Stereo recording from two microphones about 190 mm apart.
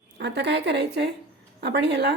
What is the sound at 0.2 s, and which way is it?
Speech, 65° right (ahead or behind).